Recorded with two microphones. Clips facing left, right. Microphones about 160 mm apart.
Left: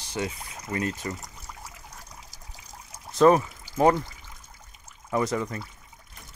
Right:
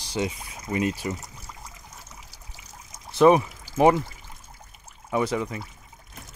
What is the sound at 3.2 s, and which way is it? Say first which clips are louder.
Speech: right 1 dB; 15° right (ahead or behind).